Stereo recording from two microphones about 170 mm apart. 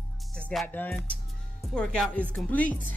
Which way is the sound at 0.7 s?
10° left (ahead or behind).